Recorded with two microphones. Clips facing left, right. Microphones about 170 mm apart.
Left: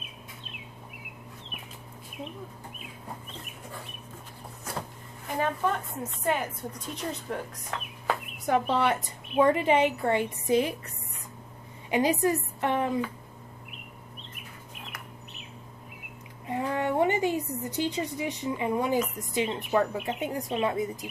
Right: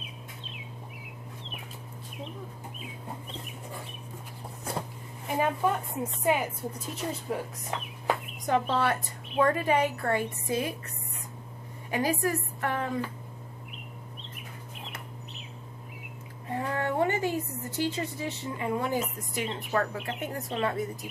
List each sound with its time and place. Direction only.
5.4 s a woman's voice: 10° right (ahead or behind)
7.7 s a woman's voice: 20° right (ahead or behind)
8.5 s a woman's voice: 15° left (ahead or behind)
11.9 s a woman's voice: 20° left (ahead or behind)
16.4 s speech: 15° left (ahead or behind)